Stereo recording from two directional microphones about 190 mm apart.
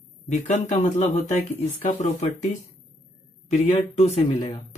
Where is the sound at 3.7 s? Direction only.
35° left (ahead or behind).